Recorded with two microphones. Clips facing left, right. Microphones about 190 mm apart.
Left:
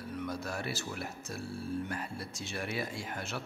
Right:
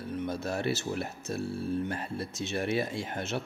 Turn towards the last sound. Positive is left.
turn(degrees=-25)  # may be behind; listen again after turning